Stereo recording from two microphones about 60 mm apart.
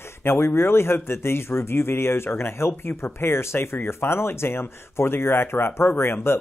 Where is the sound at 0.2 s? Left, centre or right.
Left.